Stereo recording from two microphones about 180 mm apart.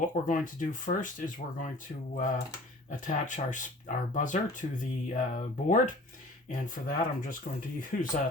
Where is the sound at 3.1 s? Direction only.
45° left (ahead or behind).